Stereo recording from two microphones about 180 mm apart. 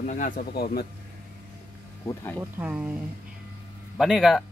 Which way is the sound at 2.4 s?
5° right (ahead or behind).